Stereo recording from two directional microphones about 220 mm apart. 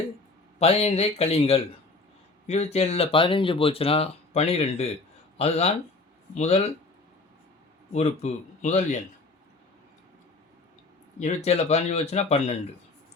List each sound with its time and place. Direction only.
0.6 s speech: 30° left (ahead or behind)
7.9 s a man's voice: 30° left (ahead or behind)
11.2 s speech: 30° left (ahead or behind)